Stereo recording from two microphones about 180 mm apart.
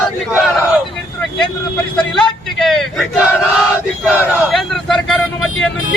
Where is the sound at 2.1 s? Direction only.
5° left (ahead or behind).